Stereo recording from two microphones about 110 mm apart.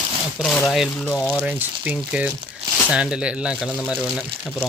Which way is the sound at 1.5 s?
15° right (ahead or behind).